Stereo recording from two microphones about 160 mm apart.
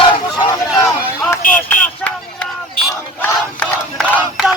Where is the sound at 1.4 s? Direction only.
60° left (ahead or behind).